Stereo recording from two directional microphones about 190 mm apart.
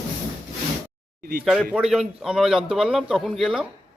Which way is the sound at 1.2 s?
55° right (ahead or behind).